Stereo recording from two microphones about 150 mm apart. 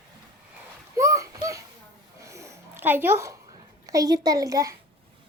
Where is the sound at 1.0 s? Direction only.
20° right (ahead or behind).